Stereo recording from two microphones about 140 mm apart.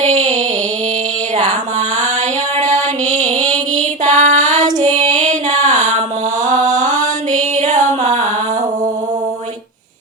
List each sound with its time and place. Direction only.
0.0 s a sound: 60° right (ahead or behind)
2.6 s music: 60° right (ahead or behind)
3.5 s female singing: 60° right (ahead or behind)
6.5 s music: 60° right (ahead or behind)